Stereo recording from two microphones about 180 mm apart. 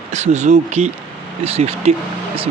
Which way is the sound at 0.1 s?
40° right (ahead or behind).